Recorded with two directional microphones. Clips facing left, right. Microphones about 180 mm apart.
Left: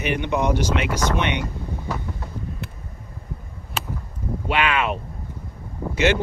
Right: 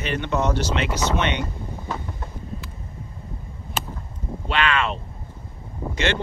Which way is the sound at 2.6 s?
60° left (ahead or behind).